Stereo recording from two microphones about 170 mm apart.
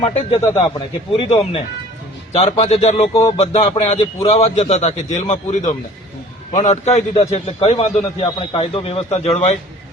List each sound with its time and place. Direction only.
0.0 s a man's voice: 35° left (ahead or behind)